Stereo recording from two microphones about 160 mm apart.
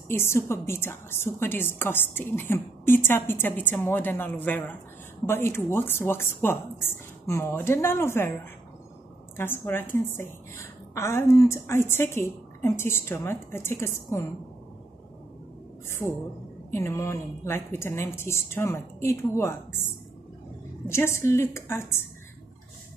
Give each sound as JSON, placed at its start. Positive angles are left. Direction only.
{"t": 0.1, "sound": "a woman's voice", "side_deg": 15}
{"t": 9.4, "sound": "a woman's voice", "side_deg": 15}
{"t": 15.9, "sound": "a woman's voice", "side_deg": 15}
{"t": 20.9, "sound": "a woman's voice", "side_deg": 15}